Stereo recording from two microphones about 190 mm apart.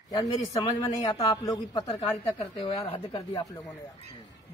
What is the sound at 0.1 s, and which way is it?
A man's voice, 20° left (ahead or behind).